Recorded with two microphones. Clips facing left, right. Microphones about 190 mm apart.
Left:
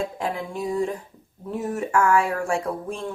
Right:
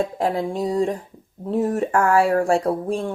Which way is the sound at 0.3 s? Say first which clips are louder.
Right 3 dB; 35° right (ahead or behind).